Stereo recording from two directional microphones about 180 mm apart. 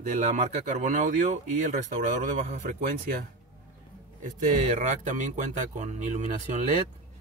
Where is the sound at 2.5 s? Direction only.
50° right (ahead or behind).